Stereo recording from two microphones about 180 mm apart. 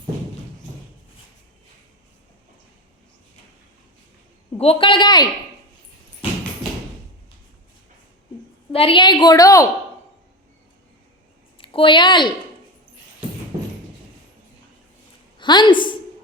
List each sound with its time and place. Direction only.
4.5 s a woman's voice: 35° left (ahead or behind)
8.7 s a woman's voice: 30° left (ahead or behind)
11.5 s a woman's voice: 30° left (ahead or behind)
15.4 s a woman's voice: 25° left (ahead or behind)